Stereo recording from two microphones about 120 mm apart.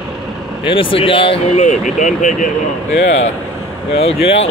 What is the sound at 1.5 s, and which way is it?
Speech, 85° left.